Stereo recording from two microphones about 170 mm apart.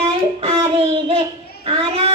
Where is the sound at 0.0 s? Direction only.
35° right (ahead or behind).